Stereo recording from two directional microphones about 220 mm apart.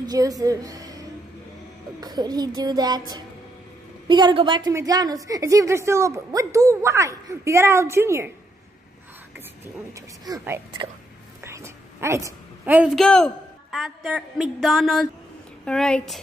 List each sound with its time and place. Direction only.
0.0 s a woman's voice: 15° right (ahead or behind)
9.9 s a woman's voice: 15° right (ahead or behind)
11.4 s whispering: 10° right (ahead or behind)
12.3 s a woman's voice: 5° right (ahead or behind)